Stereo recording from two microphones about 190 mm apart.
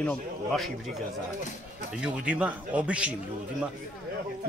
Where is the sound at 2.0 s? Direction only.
5° right (ahead or behind).